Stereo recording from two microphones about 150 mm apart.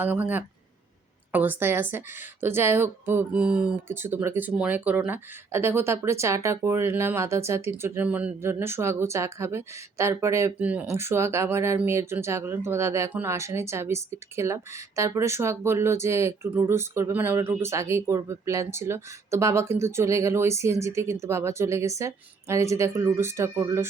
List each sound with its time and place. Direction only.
0.0 s a woman's voice: 10° right (ahead or behind)